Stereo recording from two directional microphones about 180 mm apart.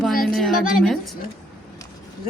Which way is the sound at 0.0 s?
Centre (ahead or behind).